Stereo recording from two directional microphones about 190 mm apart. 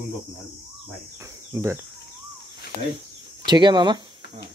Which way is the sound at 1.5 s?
15° right (ahead or behind).